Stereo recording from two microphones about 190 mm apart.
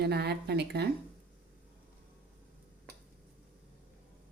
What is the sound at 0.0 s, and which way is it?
Speech, 60° right (ahead or behind).